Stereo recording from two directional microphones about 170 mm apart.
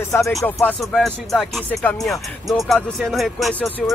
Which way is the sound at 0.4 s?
15° left (ahead or behind).